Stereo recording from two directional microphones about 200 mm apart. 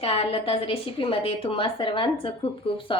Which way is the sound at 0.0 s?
30° left (ahead or behind).